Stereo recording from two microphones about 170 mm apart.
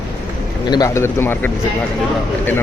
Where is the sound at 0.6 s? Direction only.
25° left (ahead or behind).